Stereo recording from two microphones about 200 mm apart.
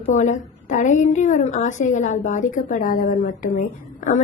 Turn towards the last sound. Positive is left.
turn(degrees=40)  # may be behind; listen again after turning